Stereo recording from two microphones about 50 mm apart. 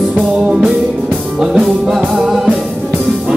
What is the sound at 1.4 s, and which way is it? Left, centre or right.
Music, centre.